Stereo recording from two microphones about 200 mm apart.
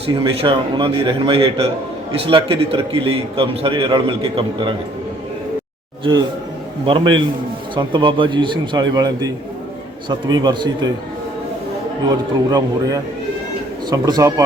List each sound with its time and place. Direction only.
0.0 s a man's voice: 25° right (ahead or behind)
6.8 s a man's voice: 25° right (ahead or behind)
12.0 s a man's voice: 20° right (ahead or behind)